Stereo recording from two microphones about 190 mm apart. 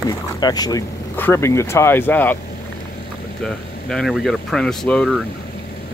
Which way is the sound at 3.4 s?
5° left (ahead or behind).